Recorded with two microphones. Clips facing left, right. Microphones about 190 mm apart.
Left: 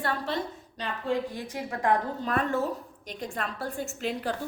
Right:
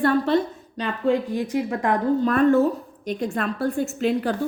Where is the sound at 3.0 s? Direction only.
65° right (ahead or behind).